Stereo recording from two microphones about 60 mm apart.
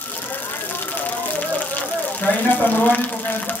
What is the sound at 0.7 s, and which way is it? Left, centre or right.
Music, left.